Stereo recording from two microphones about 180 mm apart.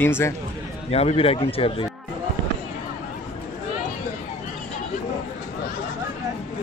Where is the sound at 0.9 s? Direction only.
35° left (ahead or behind).